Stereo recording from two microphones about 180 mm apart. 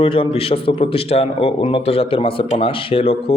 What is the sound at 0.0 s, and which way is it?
A man's voice, 30° left (ahead or behind).